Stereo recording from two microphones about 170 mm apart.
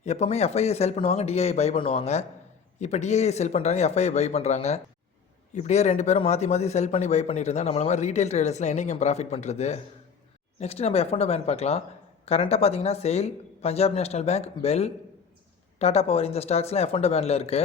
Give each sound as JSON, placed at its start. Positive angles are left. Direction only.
{"t": 0.0, "sound": "a man's voice", "side_deg": 40}